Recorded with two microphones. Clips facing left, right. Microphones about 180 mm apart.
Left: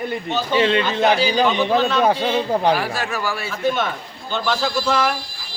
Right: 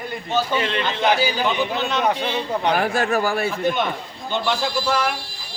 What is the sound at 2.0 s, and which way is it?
Speech, 30° left (ahead or behind).